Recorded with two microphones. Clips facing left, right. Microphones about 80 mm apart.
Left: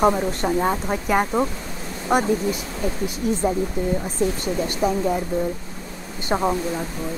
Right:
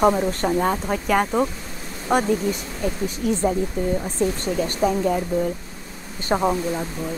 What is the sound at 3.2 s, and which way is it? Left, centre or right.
Speech, left.